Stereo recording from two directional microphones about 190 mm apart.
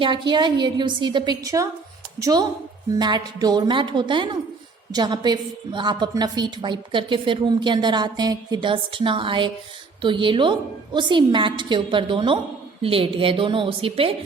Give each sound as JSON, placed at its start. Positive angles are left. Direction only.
{"t": 0.0, "sound": "a woman's voice", "side_deg": -25}